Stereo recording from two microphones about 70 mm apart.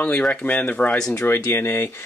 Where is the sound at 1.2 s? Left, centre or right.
Left.